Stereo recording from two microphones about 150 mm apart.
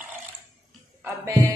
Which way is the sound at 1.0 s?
20° right (ahead or behind).